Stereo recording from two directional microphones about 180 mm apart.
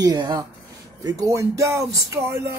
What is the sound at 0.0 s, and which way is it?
Speech, 20° right (ahead or behind).